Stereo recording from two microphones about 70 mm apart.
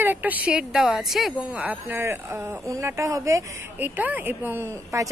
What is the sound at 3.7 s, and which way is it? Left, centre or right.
Speech, right.